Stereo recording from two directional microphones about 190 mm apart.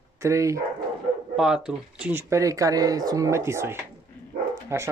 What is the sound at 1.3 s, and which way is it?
Speech, 5° right (ahead or behind).